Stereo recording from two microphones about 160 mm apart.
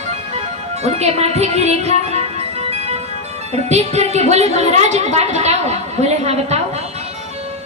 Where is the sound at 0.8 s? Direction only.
40° right (ahead or behind).